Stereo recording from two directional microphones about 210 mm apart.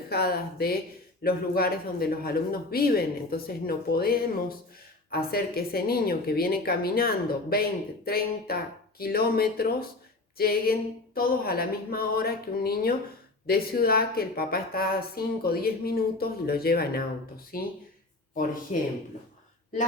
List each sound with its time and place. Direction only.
0.1 s a woman's voice: 50° left (ahead or behind)
18.7 s speech: 35° left (ahead or behind)